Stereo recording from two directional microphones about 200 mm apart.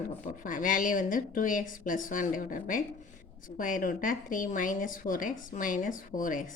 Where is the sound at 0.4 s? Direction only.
40° left (ahead or behind).